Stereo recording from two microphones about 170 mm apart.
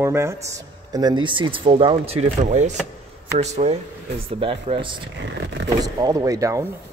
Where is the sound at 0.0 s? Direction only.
15° right (ahead or behind).